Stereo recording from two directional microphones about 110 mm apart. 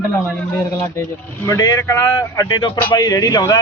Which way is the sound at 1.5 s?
25° left (ahead or behind).